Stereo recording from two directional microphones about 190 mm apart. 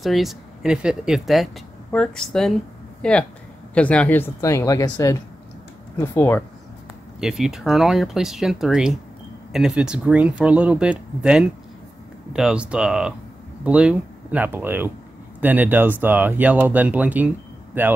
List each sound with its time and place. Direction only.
0.0 s speech: centre (ahead or behind)
7.2 s speech: 5° right (ahead or behind)